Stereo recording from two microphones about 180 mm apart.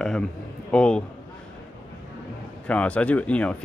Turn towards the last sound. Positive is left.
turn(degrees=5)  # may be behind; listen again after turning